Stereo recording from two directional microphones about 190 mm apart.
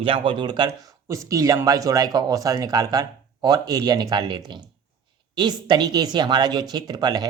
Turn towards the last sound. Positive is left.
turn(degrees=-20)  # may be behind; listen again after turning